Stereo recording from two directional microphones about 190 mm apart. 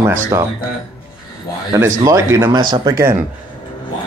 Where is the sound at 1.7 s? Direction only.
15° right (ahead or behind).